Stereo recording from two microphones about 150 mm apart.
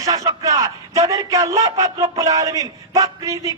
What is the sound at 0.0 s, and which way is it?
A man's voice, 25° right (ahead or behind).